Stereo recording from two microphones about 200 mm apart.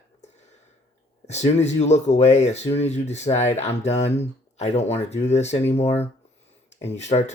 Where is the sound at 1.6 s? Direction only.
35° left (ahead or behind).